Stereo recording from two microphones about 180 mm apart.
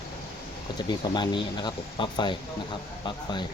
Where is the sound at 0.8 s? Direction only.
25° left (ahead or behind).